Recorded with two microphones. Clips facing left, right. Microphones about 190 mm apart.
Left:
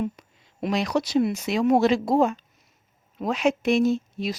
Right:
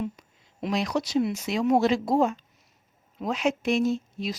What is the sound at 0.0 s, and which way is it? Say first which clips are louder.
A woman's voice: left 3 dB; 60° left (ahead or behind).